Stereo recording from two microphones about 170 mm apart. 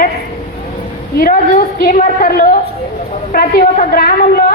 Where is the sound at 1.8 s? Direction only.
60° left (ahead or behind).